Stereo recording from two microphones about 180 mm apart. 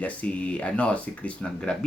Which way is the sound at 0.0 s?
5° left (ahead or behind).